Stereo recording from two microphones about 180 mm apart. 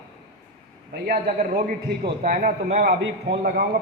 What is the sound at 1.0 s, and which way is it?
A man's voice, 45° right (ahead or behind).